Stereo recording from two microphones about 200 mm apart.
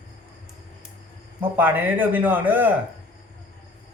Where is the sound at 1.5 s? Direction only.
10° right (ahead or behind).